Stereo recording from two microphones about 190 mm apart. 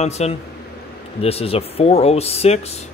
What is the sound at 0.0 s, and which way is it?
A man's voice, 35° left (ahead or behind).